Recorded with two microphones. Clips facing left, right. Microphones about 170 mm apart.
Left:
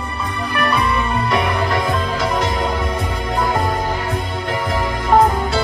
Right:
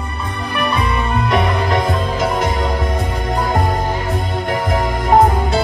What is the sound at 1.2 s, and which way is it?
Music, 20° right (ahead or behind).